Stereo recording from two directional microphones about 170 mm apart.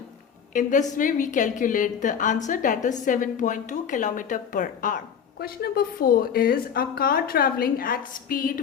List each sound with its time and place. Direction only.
0.5 s a woman's voice: 50° left (ahead or behind)